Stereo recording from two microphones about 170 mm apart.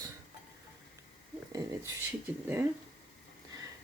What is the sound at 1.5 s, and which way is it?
Speech, 15° right (ahead or behind).